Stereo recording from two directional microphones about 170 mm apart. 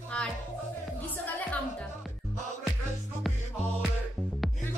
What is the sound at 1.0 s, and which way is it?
A woman's voice, 10° left (ahead or behind).